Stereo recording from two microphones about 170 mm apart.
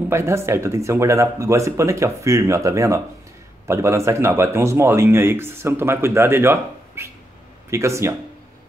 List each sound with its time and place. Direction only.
0.1 s speech: 15° right (ahead or behind)